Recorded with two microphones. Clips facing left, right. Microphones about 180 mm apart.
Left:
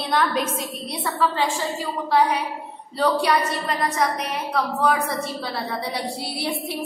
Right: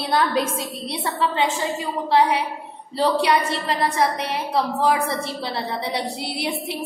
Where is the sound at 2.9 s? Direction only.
25° right (ahead or behind).